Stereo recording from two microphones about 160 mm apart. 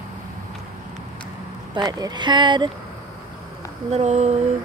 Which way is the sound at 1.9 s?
25° right (ahead or behind).